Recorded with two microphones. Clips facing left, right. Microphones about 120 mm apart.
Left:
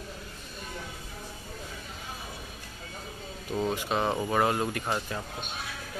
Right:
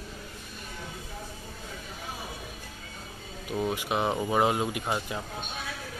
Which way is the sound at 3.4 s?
15° right (ahead or behind).